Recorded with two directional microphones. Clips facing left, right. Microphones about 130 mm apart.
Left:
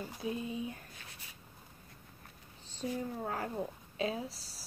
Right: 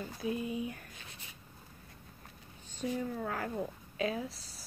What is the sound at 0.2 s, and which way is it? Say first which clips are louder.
Speech: right 2 dB; 25° left (ahead or behind).